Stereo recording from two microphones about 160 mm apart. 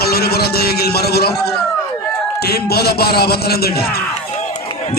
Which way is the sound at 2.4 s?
80° left.